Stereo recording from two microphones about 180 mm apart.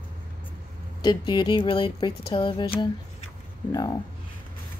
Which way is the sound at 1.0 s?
25° left (ahead or behind).